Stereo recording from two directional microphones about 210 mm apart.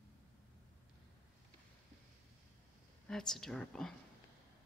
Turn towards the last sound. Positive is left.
turn(degrees=0)  # may be behind; listen again after turning